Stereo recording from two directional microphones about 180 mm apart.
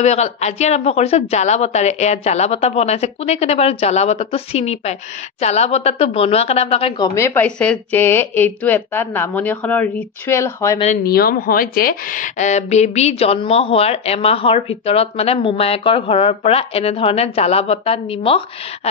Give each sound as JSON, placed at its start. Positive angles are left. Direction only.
{"t": 0.0, "sound": "a woman's voice", "side_deg": 40}
{"t": 7.0, "sound": "a woman's voice", "side_deg": 15}
{"t": 11.1, "sound": "a woman's voice", "side_deg": 55}